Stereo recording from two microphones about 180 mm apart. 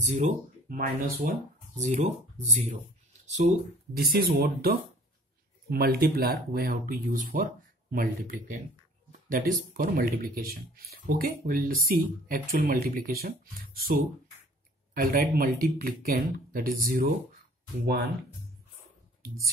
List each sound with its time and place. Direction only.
0.1 s speech: 40° right (ahead or behind)
1.8 s speech: 40° right (ahead or behind)
3.9 s speech: 60° right (ahead or behind)
15.0 s speech: 55° right (ahead or behind)